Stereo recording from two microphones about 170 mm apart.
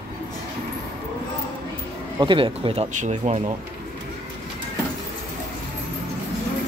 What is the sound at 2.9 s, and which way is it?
Speech, 45° right (ahead or behind).